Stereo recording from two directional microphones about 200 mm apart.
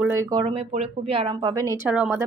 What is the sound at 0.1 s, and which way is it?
A woman's voice, 15° right (ahead or behind).